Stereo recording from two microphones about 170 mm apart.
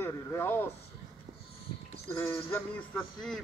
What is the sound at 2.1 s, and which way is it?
A man's voice, 15° left (ahead or behind).